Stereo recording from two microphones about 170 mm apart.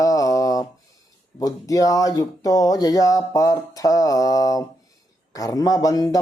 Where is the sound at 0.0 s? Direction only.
20° left (ahead or behind).